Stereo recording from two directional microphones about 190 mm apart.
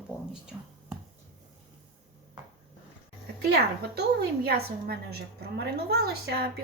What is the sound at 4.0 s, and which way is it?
Speech, 60° right (ahead or behind).